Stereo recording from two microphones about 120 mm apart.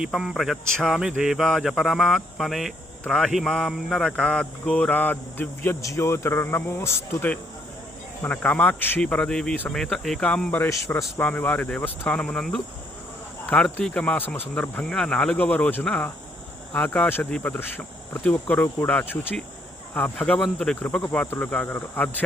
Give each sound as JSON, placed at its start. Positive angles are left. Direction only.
{"t": 0.0, "sound": "speech", "side_deg": -5}
{"t": 10.7, "sound": "speech", "side_deg": 25}
{"t": 11.2, "sound": "speech", "side_deg": 10}
{"t": 13.7, "sound": "speech", "side_deg": 10}